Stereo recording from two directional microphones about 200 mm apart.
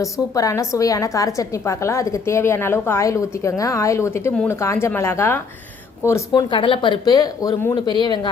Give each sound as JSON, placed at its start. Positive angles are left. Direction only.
{"t": 0.0, "sound": "a woman's voice", "side_deg": 15}